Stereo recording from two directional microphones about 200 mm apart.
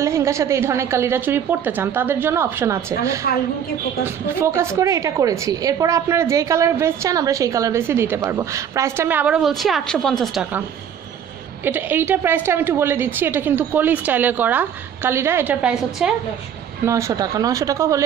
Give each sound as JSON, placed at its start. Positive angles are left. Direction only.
{"t": 0.0, "sound": "a woman's voice", "side_deg": -15}
{"t": 11.6, "sound": "a woman's voice", "side_deg": -10}